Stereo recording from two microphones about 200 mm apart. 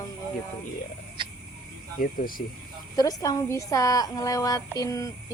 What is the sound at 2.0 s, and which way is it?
Speech, 45° left (ahead or behind).